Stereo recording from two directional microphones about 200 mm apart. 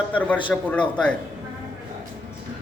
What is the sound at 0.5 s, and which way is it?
Speech, 5° left (ahead or behind).